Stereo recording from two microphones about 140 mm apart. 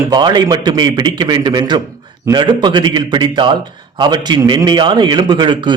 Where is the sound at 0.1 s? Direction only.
30° right (ahead or behind).